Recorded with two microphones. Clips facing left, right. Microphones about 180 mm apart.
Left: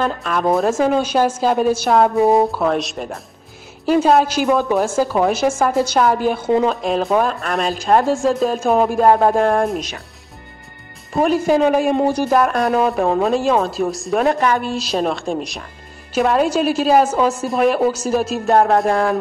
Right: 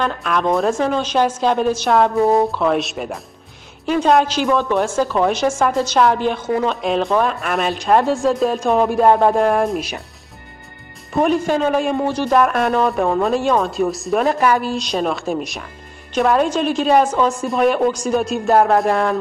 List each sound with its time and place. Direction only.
0.0 s a woman's voice: 5° left (ahead or behind)
2.1 s speech: 20° left (ahead or behind)
2.6 s a woman's voice: centre (ahead or behind)
11.1 s a woman's voice: 5° left (ahead or behind)